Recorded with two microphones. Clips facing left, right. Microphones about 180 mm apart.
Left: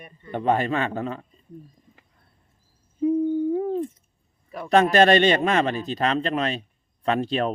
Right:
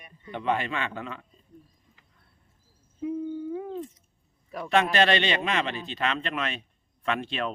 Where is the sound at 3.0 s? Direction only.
35° left (ahead or behind).